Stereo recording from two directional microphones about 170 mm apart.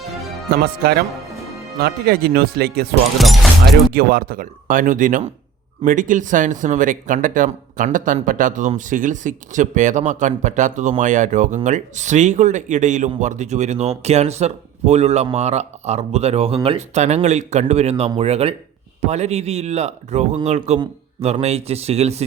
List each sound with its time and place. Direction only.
0.5 s speech: 60° right (ahead or behind)
3.2 s speech: centre (ahead or behind)
3.9 s speech: 60° right (ahead or behind); by 22.2 s 40° right (ahead or behind)